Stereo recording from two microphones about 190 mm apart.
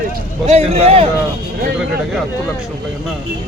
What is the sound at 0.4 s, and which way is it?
Speech, 35° right (ahead or behind).